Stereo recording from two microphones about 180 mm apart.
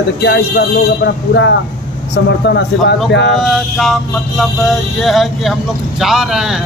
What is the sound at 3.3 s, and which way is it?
Vehicle, centre (ahead or behind).